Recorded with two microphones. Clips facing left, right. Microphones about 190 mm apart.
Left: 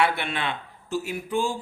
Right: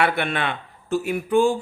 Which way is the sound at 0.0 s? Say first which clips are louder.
Right 3 dB; 55° right (ahead or behind).